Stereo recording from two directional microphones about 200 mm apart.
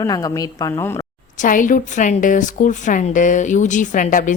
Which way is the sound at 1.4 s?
40° left (ahead or behind).